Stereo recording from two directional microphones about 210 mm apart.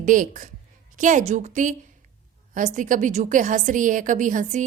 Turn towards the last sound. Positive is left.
turn(degrees=-35)  # may be behind; listen again after turning